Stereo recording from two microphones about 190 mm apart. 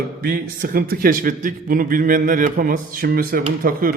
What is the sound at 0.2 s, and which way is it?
A man's voice, 50° right (ahead or behind).